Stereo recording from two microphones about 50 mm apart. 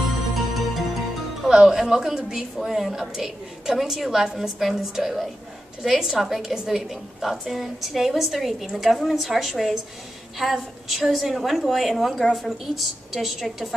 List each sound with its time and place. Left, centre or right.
0.3 s music: centre
1.5 s a woman's voice: centre
2.6 s a woman's voice: centre